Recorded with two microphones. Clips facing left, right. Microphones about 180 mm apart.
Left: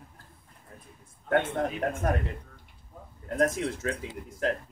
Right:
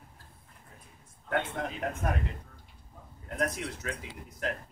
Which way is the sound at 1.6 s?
45° left (ahead or behind).